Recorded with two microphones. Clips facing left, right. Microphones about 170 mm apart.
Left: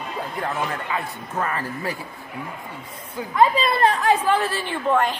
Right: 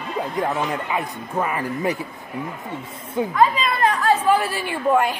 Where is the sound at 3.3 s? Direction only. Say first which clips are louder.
Left 2 dB; 30° left (ahead or behind).